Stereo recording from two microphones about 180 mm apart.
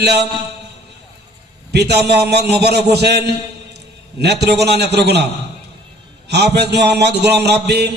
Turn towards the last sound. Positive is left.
turn(degrees=-65)  # may be behind; listen again after turning